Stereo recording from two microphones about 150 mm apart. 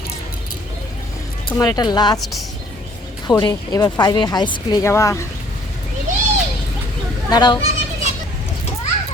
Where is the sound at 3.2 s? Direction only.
30° left (ahead or behind).